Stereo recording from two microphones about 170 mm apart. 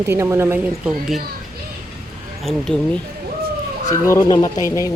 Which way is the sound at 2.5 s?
5° left (ahead or behind).